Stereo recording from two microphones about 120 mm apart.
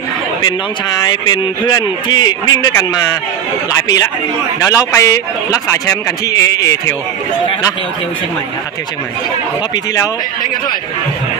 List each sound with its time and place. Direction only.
1.0 s a man's voice: 40° left (ahead or behind)